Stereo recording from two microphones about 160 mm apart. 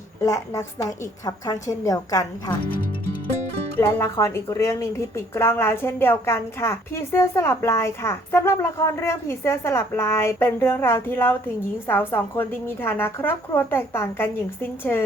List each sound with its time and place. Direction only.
0.2 s a woman's voice: 20° left (ahead or behind)
2.6 s music: 65° left (ahead or behind)
3.8 s speech: 15° left (ahead or behind)